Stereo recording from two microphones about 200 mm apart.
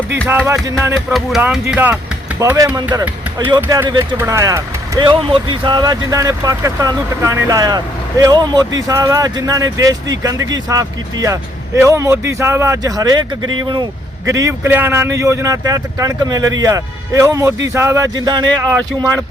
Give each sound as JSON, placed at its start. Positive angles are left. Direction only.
{"t": 0.3, "sound": "speech", "side_deg": -10}